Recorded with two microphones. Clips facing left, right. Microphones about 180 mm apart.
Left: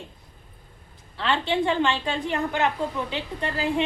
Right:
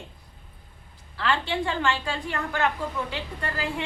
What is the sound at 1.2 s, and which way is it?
A woman's voice, 20° left (ahead or behind).